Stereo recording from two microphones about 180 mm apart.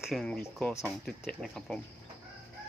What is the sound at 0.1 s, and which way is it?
Speech, 5° left (ahead or behind).